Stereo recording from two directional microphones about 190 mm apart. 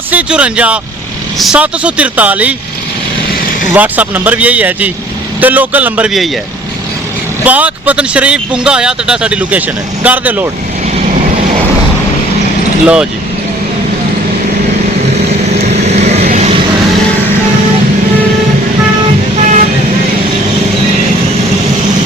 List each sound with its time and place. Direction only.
0.1 s speech: 5° right (ahead or behind)
3.8 s speech: 10° right (ahead or behind)
7.4 s speech: 10° right (ahead or behind)
12.8 s speech: 5° right (ahead or behind)
15.8 s vehicle: 35° right (ahead or behind)